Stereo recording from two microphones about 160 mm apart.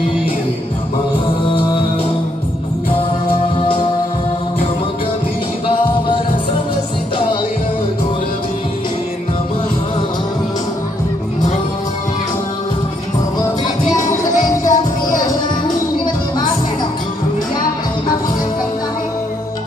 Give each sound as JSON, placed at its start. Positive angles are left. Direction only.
{"t": 1.4, "sound": "music", "side_deg": 35}
{"t": 14.0, "sound": "music", "side_deg": 50}